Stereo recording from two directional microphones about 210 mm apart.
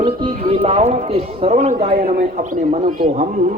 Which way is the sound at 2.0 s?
40° right (ahead or behind).